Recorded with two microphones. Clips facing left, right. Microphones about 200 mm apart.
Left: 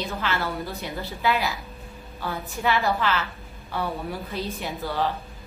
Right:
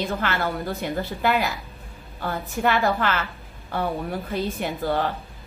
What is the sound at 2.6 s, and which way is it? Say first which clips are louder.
Speech: right 2 dB; 55° right (ahead or behind).